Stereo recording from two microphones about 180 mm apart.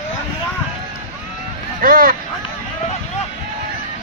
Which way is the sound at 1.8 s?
50° right (ahead or behind).